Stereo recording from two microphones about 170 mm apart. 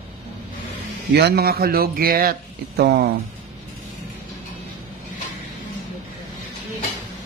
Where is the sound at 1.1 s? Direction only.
70° right (ahead or behind).